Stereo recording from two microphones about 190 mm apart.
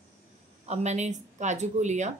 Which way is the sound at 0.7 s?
35° right (ahead or behind).